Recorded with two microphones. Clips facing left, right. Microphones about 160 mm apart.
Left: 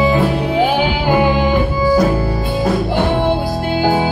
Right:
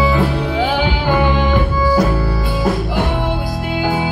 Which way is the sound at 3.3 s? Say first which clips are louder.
Left 4 dB; 35° left (ahead or behind).